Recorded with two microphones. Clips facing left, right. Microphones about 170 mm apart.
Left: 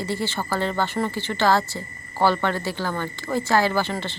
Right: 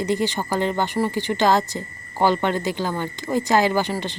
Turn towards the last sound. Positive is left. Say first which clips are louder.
# right 2 dB
turn(degrees=-15)  # may be behind; listen again after turning